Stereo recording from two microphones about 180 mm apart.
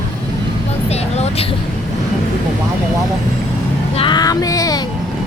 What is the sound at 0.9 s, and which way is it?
Vehicle, 35° left (ahead or behind).